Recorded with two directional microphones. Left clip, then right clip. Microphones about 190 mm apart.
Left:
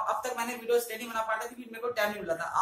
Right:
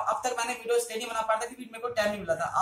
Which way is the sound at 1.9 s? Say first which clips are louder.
Right 2 dB; centre (ahead or behind).